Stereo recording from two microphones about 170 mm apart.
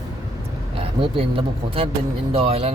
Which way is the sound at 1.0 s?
35° right (ahead or behind).